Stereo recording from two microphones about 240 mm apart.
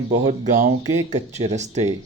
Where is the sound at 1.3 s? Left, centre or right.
Right.